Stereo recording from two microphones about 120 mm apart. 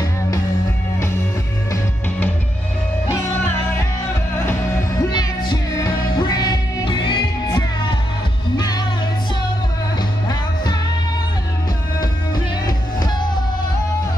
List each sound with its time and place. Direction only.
3.1 s music: 20° left (ahead or behind)
5.1 s music: 35° left (ahead or behind)
8.5 s music: 35° left (ahead or behind)
10.2 s music: 35° left (ahead or behind)